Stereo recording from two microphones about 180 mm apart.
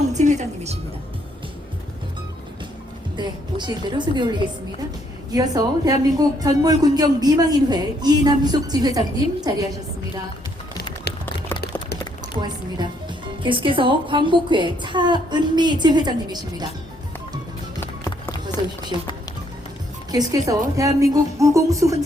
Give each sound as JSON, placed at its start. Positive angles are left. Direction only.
{"t": 0.1, "sound": "music", "side_deg": -40}
{"t": 3.2, "sound": "a man's voice", "side_deg": -25}
{"t": 11.1, "sound": "a sound", "side_deg": 65}
{"t": 12.4, "sound": "a man's voice", "side_deg": -25}
{"t": 18.0, "sound": "music", "side_deg": 20}
{"t": 20.1, "sound": "speech", "side_deg": -20}